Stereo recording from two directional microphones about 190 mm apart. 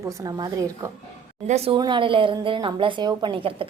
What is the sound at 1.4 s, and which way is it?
A woman's voice, 35° right (ahead or behind).